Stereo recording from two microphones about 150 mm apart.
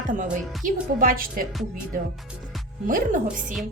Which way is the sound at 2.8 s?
65° right (ahead or behind).